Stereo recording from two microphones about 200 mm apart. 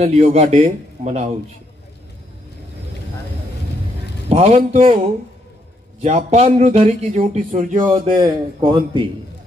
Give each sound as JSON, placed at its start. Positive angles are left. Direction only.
{"t": 0.0, "sound": "speech", "side_deg": -30}
{"t": 4.3, "sound": "speech", "side_deg": -35}
{"t": 6.0, "sound": "speech", "side_deg": -30}
{"t": 8.2, "sound": "speech", "side_deg": -25}